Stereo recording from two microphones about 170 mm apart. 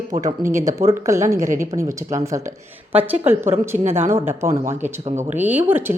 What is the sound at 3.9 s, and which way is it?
Speech, 15° right (ahead or behind).